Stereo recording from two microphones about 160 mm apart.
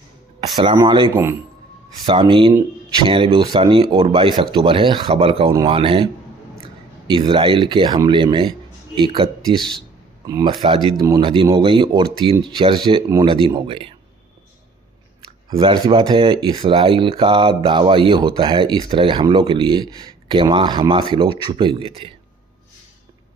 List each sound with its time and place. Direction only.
0.8 s speech: 30° right (ahead or behind)
7.1 s a man's voice: 30° right (ahead or behind)
9.6 s speech: 5° left (ahead or behind)
10.2 s speech: 25° right (ahead or behind)
15.5 s speech: 30° right (ahead or behind)